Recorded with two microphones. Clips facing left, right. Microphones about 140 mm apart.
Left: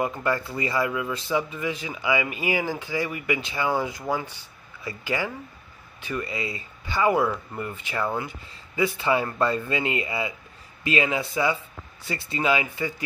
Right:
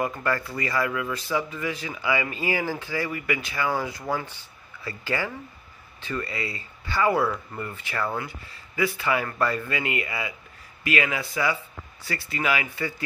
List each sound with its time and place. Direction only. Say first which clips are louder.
0.0 s speech: left 1 dB; 20° left (ahead or behind)